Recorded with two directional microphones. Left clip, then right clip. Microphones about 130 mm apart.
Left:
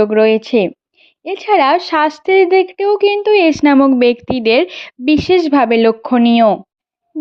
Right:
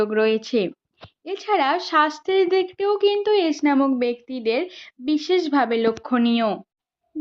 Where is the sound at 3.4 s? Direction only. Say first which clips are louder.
Left 10 dB; 90° left.